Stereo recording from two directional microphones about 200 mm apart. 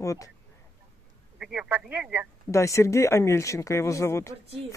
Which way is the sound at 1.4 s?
5° right (ahead or behind).